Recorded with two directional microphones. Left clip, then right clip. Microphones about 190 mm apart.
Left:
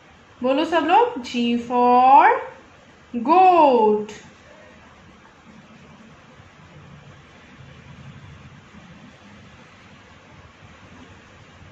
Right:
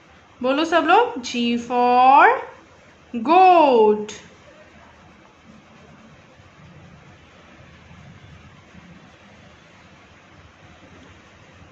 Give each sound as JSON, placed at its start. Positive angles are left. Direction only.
{"t": 0.4, "sound": "speech", "side_deg": -25}